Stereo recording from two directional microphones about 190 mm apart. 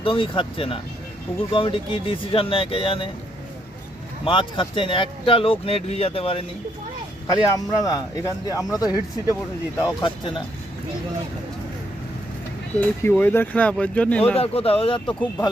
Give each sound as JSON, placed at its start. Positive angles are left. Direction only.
{"t": 0.0, "sound": "speech", "side_deg": 25}
{"t": 4.3, "sound": "speech", "side_deg": 25}
{"t": 7.3, "sound": "speech", "side_deg": 20}
{"t": 12.8, "sound": "speech", "side_deg": 10}
{"t": 14.3, "sound": "speech", "side_deg": 30}